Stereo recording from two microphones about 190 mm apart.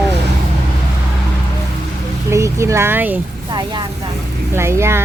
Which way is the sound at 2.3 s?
15° right (ahead or behind).